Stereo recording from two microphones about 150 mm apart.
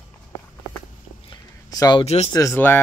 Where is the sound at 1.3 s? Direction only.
25° left (ahead or behind).